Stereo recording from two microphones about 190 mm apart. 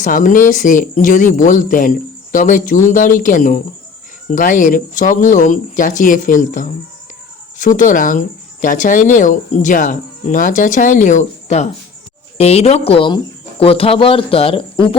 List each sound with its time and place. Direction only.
0.0 s a woman's voice: 45° left (ahead or behind)